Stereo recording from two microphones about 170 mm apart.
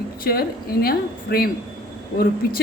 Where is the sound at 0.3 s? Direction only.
65° left (ahead or behind).